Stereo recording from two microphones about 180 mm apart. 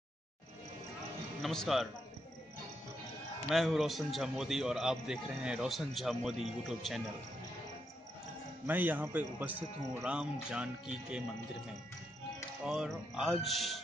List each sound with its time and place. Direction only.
1.4 s a man's voice: centre (ahead or behind)
3.4 s a man's voice: centre (ahead or behind)
8.6 s speech: 10° right (ahead or behind)
12.6 s a man's voice: 5° right (ahead or behind)